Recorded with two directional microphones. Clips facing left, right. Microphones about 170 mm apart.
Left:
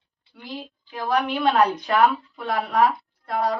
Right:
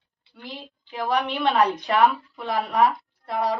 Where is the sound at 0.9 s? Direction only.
Centre (ahead or behind).